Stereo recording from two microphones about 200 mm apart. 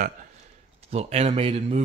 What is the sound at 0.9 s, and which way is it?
Speech, 30° right (ahead or behind).